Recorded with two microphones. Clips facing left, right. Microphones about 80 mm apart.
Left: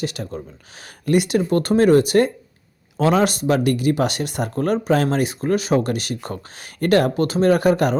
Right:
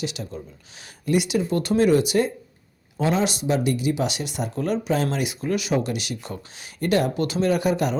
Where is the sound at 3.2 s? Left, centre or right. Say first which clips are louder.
Left 4 dB; left.